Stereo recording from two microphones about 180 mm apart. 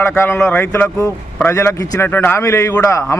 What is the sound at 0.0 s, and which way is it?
A man's voice, 15° left (ahead or behind).